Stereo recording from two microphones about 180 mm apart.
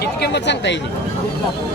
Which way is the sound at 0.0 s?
70° left (ahead or behind).